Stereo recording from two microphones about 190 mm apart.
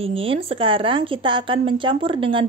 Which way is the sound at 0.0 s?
30° right (ahead or behind).